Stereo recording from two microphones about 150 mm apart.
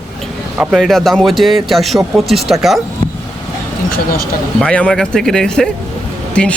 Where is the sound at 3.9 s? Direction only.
85° left.